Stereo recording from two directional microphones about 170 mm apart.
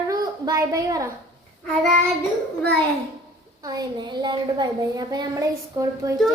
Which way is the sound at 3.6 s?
20° right (ahead or behind).